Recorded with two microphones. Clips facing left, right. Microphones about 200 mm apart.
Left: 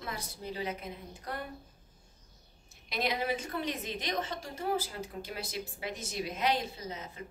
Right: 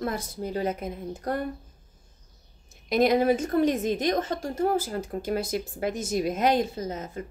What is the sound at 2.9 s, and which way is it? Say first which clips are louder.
A woman's voice: right 12 dB; 45° right (ahead or behind).